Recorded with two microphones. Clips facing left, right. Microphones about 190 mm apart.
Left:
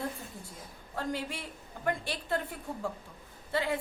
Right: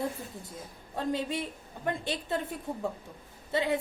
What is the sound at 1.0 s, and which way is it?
A woman's voice, 20° right (ahead or behind).